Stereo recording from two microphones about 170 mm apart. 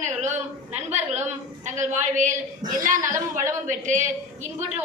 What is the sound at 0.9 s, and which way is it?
A woman's voice, 40° right (ahead or behind).